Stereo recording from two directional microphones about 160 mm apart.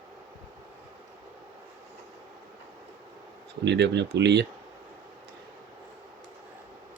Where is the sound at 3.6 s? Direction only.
90° right.